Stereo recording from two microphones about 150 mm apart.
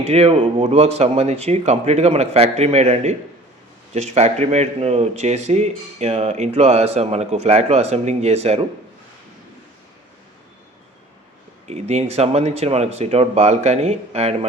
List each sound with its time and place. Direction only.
0.1 s speech: 45° right (ahead or behind)
11.7 s speech: 45° right (ahead or behind)